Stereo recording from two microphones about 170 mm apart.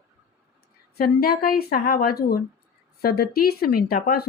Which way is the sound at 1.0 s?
60° left (ahead or behind).